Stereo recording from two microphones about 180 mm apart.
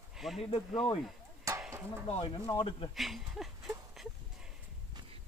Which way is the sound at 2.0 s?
35° left (ahead or behind).